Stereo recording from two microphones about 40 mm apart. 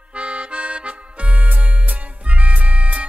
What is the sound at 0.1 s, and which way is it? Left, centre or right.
Music, right.